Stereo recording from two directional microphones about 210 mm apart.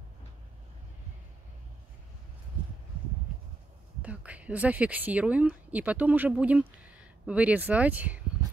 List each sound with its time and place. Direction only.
4.0 s a woman's voice: 5° right (ahead or behind)